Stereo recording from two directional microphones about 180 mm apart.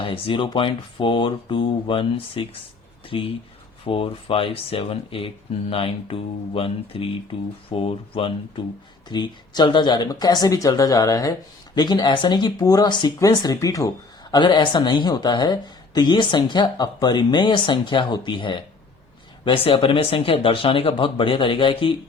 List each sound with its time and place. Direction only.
0.0 s speech: 30° left (ahead or behind)